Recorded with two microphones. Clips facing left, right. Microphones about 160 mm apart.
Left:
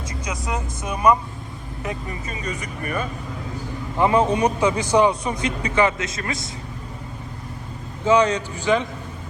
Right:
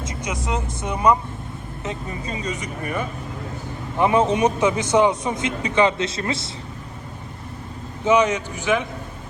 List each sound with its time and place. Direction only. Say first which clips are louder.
0.0 s a man's voice: right 2 dB; 25° right (ahead or behind)
8.0 s a man's voice: even; 15° right (ahead or behind)